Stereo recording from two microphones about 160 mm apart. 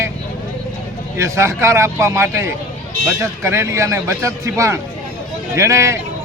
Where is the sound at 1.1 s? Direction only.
20° right (ahead or behind).